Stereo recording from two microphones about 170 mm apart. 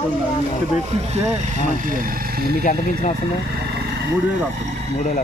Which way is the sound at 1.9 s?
55° right (ahead or behind).